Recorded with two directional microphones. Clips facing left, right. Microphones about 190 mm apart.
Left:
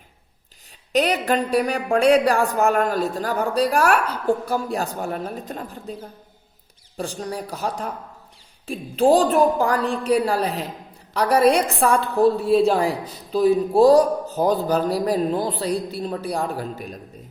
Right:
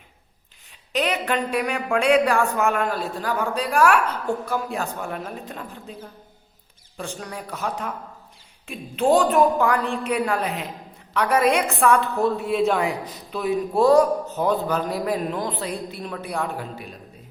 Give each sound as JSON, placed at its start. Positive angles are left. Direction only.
{"t": 0.9, "sound": "a woman's voice", "side_deg": 40}